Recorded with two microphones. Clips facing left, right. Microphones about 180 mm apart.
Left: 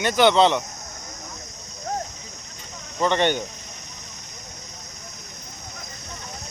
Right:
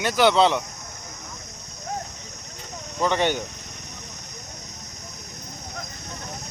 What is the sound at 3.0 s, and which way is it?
Speech, 5° right (ahead or behind).